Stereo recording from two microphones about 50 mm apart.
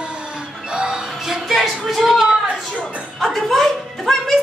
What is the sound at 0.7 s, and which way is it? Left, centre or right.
Music, centre.